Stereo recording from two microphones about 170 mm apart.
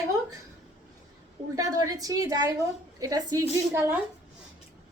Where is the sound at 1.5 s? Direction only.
20° right (ahead or behind).